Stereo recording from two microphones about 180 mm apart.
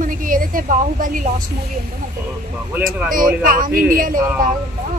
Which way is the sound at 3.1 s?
50° right (ahead or behind).